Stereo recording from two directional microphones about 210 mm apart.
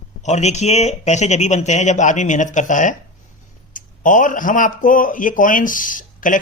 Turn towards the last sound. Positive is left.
turn(degrees=40)  # may be behind; listen again after turning